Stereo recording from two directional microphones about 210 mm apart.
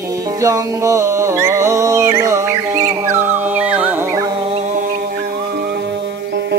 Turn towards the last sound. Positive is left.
turn(degrees=-50)  # may be behind; listen again after turning